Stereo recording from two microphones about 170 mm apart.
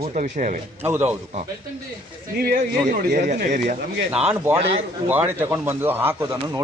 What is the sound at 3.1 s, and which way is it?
Speech, 50° right (ahead or behind).